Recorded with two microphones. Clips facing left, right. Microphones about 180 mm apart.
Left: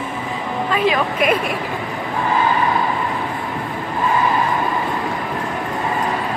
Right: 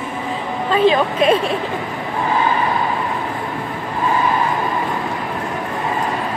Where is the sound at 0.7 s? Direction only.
30° right (ahead or behind).